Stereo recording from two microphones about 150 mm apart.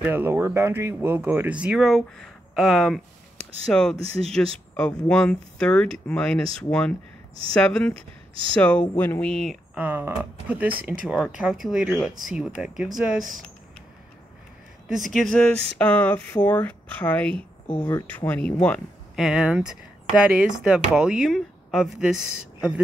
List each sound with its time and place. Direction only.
0.0 s speech: 15° right (ahead or behind); by 3.9 s 5° left (ahead or behind)
4.0 s speech: 45° right (ahead or behind)
4.7 s speech: 5° left (ahead or behind)
7.9 s speech: 35° right (ahead or behind)
8.5 s speech: 10° left (ahead or behind)
9.8 s speech: 15° right (ahead or behind)
14.9 s speech: centre (ahead or behind)
19.1 s speech: 5° right (ahead or behind)